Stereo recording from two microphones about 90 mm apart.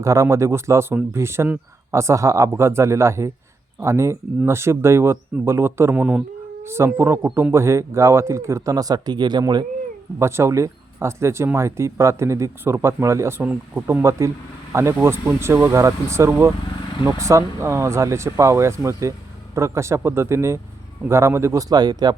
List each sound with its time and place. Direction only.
0.0 s a man's voice: 35° right (ahead or behind)
6.0 s speech: 15° right (ahead or behind)
6.7 s a man's voice: 30° right (ahead or behind); by 9.4 s 55° right (ahead or behind)
10.2 s speech: 30° right (ahead or behind)
13.4 s a man's voice: 20° right (ahead or behind); by 22.1 s 50° right (ahead or behind)